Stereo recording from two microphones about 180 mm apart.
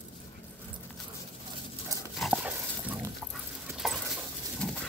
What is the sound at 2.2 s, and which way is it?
Dog, centre (ahead or behind).